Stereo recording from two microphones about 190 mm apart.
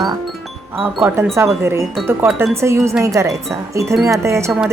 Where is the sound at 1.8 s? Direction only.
Centre (ahead or behind).